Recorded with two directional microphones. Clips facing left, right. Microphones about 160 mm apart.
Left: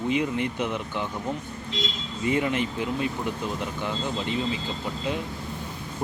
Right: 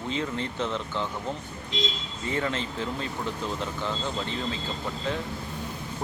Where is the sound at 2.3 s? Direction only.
15° left (ahead or behind).